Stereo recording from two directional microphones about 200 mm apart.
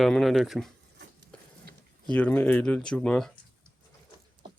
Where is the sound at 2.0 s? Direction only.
5° left (ahead or behind).